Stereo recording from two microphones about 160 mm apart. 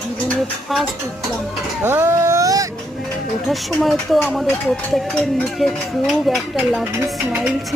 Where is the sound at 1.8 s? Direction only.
15° right (ahead or behind).